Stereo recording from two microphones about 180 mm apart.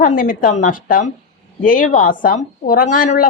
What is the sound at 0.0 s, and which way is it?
A woman's voice, 50° left (ahead or behind).